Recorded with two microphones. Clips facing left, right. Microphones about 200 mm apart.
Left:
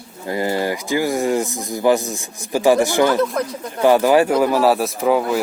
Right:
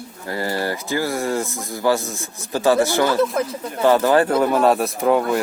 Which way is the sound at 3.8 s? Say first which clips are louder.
Left 2 dB; 15° left (ahead or behind).